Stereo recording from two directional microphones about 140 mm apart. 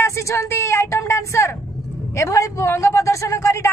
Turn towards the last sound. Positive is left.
turn(degrees=20)  # may be behind; listen again after turning